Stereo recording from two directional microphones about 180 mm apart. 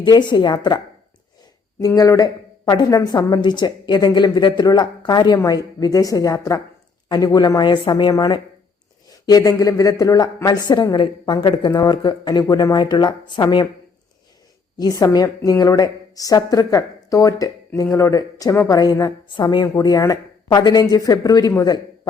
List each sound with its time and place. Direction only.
0.0 s speech: 25° left (ahead or behind)
1.8 s speech: 20° left (ahead or behind)
14.8 s speech: 20° left (ahead or behind)